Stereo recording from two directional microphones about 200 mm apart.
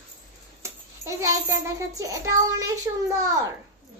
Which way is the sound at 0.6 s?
15° right (ahead or behind).